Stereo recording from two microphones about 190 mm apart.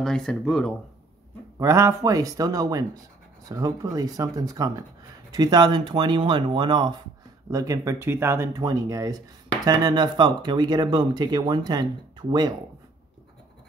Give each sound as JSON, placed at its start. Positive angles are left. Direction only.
{"t": 0.0, "sound": "speech", "side_deg": 5}
{"t": 1.6, "sound": "speech", "side_deg": -15}